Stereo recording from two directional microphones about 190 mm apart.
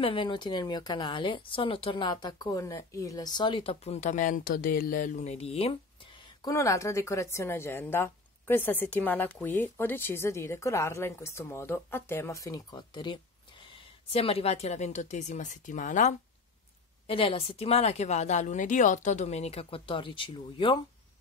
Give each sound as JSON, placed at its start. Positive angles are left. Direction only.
{"t": 0.0, "sound": "speech", "side_deg": 25}
{"t": 17.1, "sound": "a woman's voice", "side_deg": 30}